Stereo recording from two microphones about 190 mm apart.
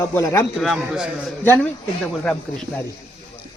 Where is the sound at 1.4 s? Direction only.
10° left (ahead or behind).